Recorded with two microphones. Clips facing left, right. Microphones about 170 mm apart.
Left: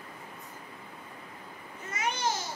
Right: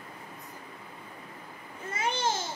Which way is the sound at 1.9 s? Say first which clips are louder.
Right 1 dB; 30° right (ahead or behind).